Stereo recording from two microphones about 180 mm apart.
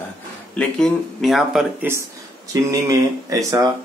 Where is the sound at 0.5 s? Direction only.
Centre (ahead or behind); by 3.7 s 20° right (ahead or behind).